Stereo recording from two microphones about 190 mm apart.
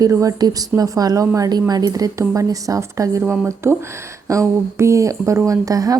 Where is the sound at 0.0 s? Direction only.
15° right (ahead or behind).